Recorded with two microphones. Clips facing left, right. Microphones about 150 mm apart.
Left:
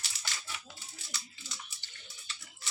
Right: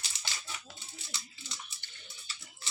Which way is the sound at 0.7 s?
25° right (ahead or behind).